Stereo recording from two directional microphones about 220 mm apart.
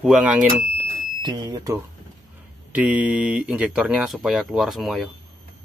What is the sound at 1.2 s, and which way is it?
Speech, 20° right (ahead or behind).